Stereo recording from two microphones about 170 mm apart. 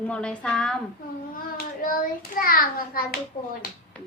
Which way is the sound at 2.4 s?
60° left (ahead or behind).